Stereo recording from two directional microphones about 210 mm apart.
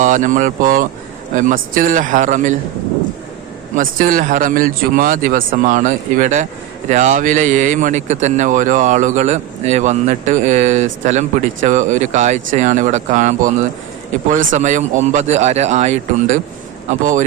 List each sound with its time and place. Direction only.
0.0 s a man's voice: 35° right (ahead or behind)
3.8 s a man's voice: 40° right (ahead or behind)